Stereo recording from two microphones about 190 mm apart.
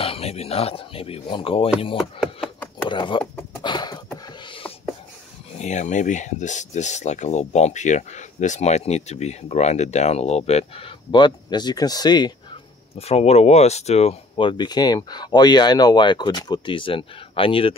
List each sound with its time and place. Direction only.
0.0 s speech: 30° left (ahead or behind)
2.0 s speech: centre (ahead or behind)
2.9 s a sound: 25° left (ahead or behind)
5.6 s speech: 40° left (ahead or behind); by 12.3 s 20° left (ahead or behind)
12.9 s speech: 30° left (ahead or behind)